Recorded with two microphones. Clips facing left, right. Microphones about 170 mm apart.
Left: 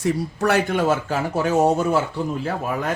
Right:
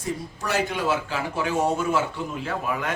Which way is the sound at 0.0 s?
65° left (ahead or behind).